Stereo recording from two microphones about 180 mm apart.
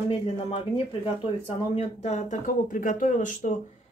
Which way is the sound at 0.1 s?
30° left (ahead or behind).